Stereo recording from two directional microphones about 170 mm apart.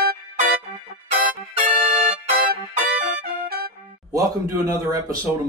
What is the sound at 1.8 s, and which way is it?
Music, 5° right (ahead or behind).